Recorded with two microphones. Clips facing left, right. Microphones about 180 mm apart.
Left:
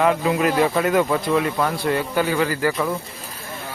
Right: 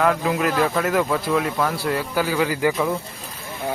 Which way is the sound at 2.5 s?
15° right (ahead or behind).